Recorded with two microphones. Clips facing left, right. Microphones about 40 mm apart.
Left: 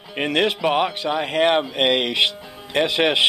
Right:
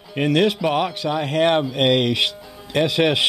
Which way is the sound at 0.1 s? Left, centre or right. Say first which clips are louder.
Right 2 dB; centre.